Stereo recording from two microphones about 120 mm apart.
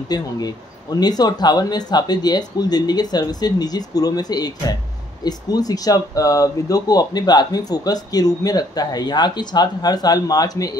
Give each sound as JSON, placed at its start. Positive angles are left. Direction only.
{"t": 0.1, "sound": "speech", "side_deg": 35}